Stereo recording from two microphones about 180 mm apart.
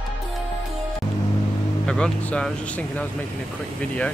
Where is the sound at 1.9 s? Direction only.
5° left (ahead or behind).